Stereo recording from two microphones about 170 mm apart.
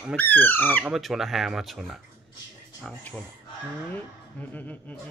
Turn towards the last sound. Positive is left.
turn(degrees=10)  # may be behind; listen again after turning